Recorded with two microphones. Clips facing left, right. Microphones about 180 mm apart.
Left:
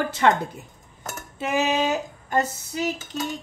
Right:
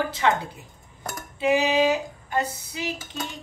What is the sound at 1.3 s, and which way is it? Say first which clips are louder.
A woman's voice: right 3 dB; 45° left (ahead or behind).